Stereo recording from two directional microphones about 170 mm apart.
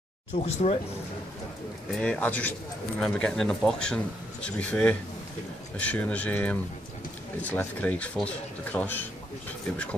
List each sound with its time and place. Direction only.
0.4 s speech: 40° left (ahead or behind)
1.9 s speech: 5° left (ahead or behind)